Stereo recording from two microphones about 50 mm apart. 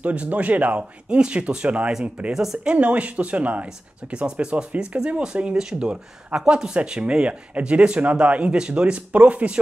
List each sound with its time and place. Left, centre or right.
0.0 s speech: right
2.3 s speech: centre
2.7 s speech: right
3.6 s speech: centre